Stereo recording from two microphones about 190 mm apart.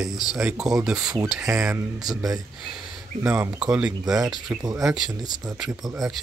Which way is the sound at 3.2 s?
10° right (ahead or behind).